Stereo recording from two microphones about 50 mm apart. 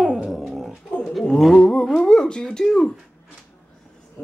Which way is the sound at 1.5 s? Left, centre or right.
Centre.